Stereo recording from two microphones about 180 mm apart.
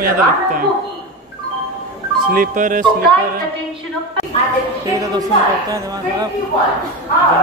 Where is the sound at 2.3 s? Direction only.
50° right (ahead or behind).